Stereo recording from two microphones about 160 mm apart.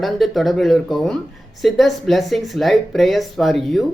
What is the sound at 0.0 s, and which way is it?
Speech, centre (ahead or behind).